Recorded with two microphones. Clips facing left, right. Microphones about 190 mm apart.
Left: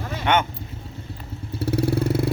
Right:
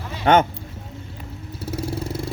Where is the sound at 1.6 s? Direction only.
65° left (ahead or behind).